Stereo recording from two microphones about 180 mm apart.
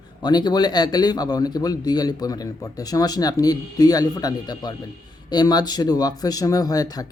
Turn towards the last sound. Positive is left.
turn(degrees=20)  # may be behind; listen again after turning